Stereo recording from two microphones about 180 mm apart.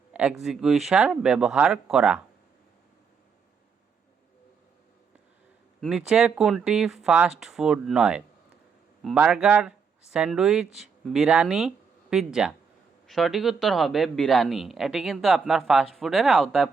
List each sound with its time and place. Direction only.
0.1 s speech: 5° right (ahead or behind)
5.8 s speech: 5° right (ahead or behind)